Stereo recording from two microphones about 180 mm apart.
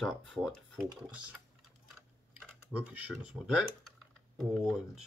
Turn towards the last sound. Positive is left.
turn(degrees=-5)  # may be behind; listen again after turning